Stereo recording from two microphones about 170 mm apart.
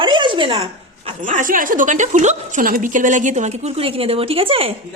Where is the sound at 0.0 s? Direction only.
30° right (ahead or behind).